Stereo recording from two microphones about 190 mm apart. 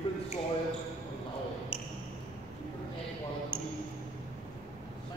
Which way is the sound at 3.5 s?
25° left (ahead or behind).